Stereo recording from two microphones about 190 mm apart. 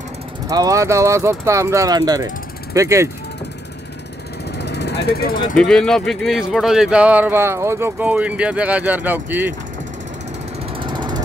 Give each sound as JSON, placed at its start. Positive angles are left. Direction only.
{"t": 0.5, "sound": "speech", "side_deg": -20}
{"t": 4.5, "sound": "vehicle", "side_deg": 60}
{"t": 5.6, "sound": "speech", "side_deg": 5}
{"t": 10.8, "sound": "ratchet", "side_deg": -25}